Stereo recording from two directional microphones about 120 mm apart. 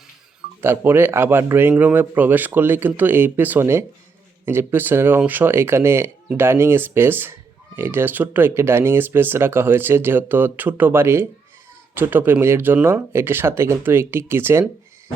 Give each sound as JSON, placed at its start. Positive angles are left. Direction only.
{"t": 0.6, "sound": "speech", "side_deg": -20}